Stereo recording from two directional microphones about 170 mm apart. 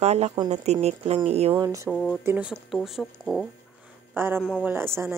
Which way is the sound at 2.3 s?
5° right (ahead or behind).